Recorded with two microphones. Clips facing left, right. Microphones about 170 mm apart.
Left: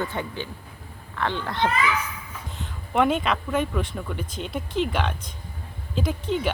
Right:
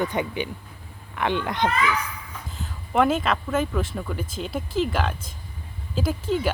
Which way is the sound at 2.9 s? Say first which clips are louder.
Right 1 dB; centre (ahead or behind).